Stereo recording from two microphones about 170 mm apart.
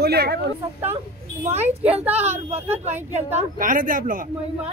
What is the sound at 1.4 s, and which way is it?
Speech, 40° right (ahead or behind).